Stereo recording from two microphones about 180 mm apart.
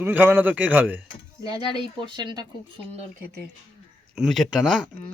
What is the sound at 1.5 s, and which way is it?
Speech, 25° right (ahead or behind).